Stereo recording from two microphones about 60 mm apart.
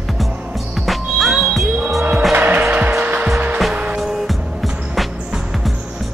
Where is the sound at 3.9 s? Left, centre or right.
Centre.